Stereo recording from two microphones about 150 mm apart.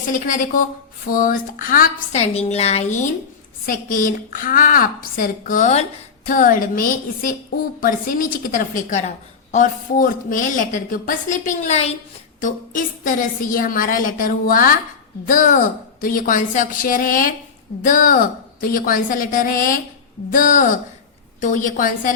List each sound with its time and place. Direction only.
0.1 s a woman's voice: 65° left (ahead or behind)
2.3 s a woman's voice: 45° left (ahead or behind)
3.7 s a woman's voice: 65° left (ahead or behind); by 11.9 s 45° left (ahead or behind)
12.4 s a woman's voice: 60° left (ahead or behind)